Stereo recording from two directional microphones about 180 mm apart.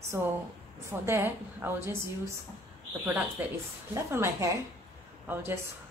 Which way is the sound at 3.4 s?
10° right (ahead or behind).